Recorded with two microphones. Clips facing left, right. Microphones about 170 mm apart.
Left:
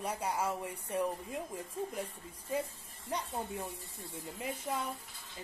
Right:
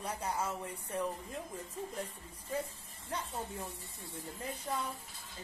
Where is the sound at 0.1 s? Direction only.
10° left (ahead or behind).